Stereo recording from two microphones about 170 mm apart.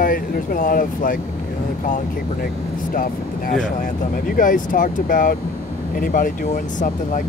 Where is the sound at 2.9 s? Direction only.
55° left (ahead or behind).